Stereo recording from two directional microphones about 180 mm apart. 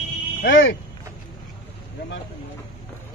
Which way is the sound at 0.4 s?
90° left.